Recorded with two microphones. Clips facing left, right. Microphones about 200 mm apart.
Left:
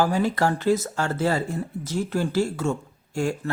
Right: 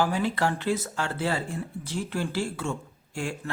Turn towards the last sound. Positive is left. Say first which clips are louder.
# left 7 dB
turn(degrees=40)  # may be behind; listen again after turning